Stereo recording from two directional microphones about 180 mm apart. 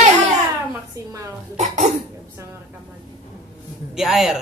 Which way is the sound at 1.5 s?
40° right (ahead or behind).